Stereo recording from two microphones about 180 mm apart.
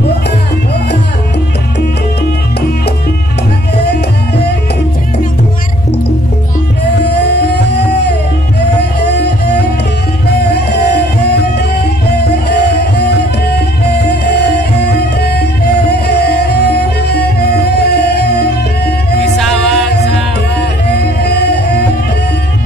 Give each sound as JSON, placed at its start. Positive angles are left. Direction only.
{"t": 3.7, "sound": "music", "side_deg": 65}
{"t": 7.0, "sound": "music", "side_deg": 65}
{"t": 19.3, "sound": "music", "side_deg": 0}
{"t": 21.0, "sound": "music", "side_deg": 65}